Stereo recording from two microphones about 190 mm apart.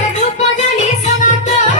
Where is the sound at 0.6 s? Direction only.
40° left (ahead or behind).